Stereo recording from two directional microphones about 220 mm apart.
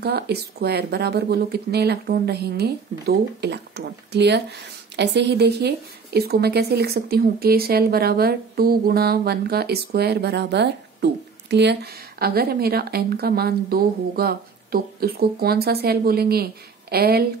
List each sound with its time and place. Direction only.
0.0 s a woman's voice: 45° right (ahead or behind)